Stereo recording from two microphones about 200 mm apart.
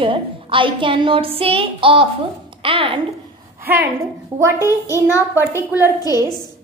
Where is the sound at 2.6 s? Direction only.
25° right (ahead or behind).